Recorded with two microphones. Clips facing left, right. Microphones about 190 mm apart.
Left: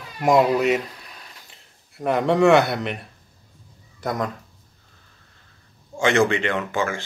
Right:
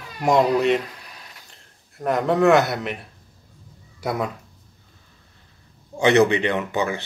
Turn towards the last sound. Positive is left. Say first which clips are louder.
# right 1 dB
turn(degrees=-20)  # may be behind; listen again after turning